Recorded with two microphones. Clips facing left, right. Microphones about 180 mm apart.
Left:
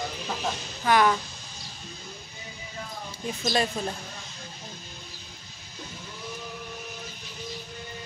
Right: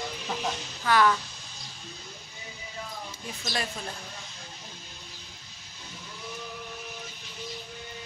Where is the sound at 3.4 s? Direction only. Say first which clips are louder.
Left 7 dB; 25° left (ahead or behind).